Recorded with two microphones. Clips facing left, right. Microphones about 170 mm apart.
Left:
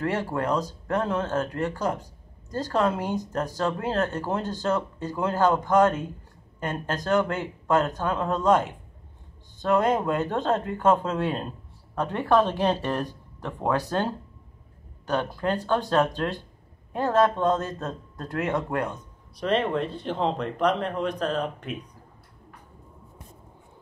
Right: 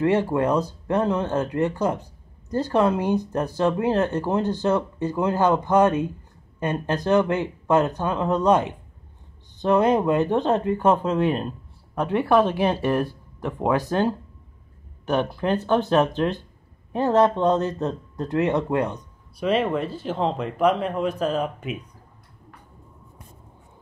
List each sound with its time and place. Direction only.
0.0 s speech: 15° right (ahead or behind)
19.4 s speech: 5° right (ahead or behind)